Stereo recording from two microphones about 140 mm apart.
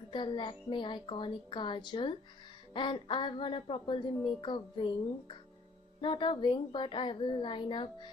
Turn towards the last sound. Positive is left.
turn(degrees=35)  # may be behind; listen again after turning